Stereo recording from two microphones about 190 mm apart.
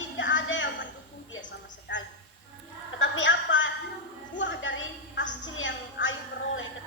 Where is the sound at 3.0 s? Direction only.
80° left.